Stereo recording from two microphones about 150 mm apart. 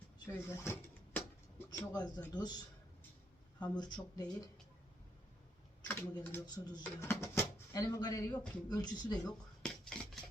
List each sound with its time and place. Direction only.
0.3 s a sound: 20° left (ahead or behind)
1.9 s speech: 25° left (ahead or behind)
3.6 s speech: 25° left (ahead or behind)
5.9 s speech: 15° left (ahead or behind)
9.6 s cutlery: 5° left (ahead or behind)